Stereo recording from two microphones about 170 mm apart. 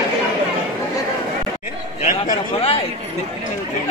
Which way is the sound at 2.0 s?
50° left (ahead or behind).